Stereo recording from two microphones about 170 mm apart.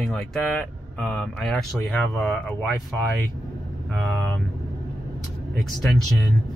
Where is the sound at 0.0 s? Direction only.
Centre (ahead or behind).